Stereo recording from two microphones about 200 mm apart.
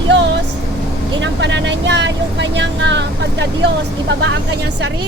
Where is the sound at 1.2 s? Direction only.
65° right (ahead or behind).